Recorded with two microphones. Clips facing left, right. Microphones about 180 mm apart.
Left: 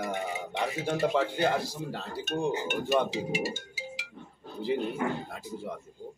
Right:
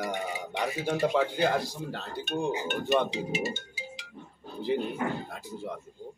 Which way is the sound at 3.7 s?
10° left (ahead or behind).